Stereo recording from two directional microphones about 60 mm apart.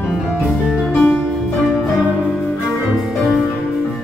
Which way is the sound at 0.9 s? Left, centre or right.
Left.